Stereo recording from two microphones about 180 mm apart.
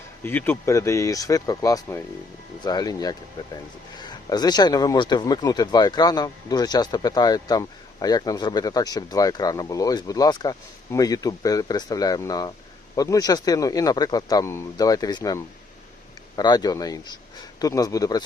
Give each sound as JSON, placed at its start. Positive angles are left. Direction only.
{"t": 0.2, "sound": "speech", "side_deg": 10}